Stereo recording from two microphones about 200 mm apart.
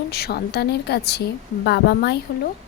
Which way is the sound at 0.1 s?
50° left (ahead or behind).